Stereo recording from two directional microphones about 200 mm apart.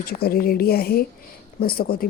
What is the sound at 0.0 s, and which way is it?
Speech, 50° left (ahead or behind).